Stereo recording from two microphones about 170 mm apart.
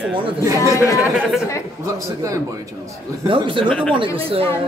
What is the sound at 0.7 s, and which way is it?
Speech, 15° left (ahead or behind).